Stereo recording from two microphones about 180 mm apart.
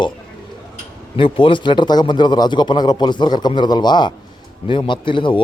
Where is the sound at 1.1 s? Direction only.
30° left (ahead or behind).